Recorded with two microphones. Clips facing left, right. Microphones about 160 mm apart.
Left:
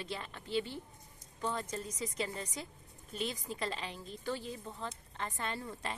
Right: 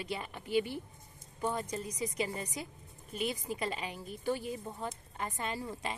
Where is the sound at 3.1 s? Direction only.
5° right (ahead or behind).